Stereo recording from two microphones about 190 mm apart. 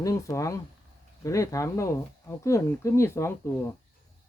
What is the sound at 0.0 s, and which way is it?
Speech, 15° left (ahead or behind).